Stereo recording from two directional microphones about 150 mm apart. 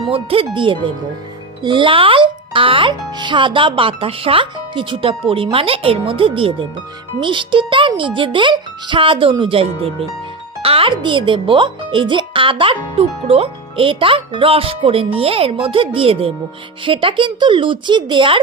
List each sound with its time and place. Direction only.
0.1 s a child's voice: 40° right (ahead or behind)